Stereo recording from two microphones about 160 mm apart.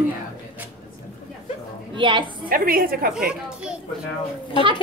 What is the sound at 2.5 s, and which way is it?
Speech, 65° right (ahead or behind).